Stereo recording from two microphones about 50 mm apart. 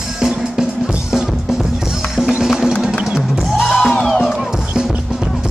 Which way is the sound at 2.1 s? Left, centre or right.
Centre.